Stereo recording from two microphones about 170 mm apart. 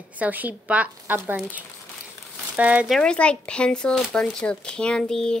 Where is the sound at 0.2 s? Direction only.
10° right (ahead or behind).